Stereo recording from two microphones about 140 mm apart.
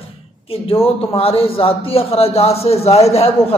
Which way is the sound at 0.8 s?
45° left (ahead or behind).